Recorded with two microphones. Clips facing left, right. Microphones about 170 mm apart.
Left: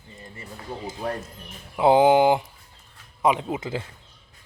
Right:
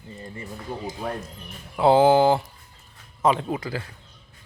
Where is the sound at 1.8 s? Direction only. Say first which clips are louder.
Even; 15° left (ahead or behind).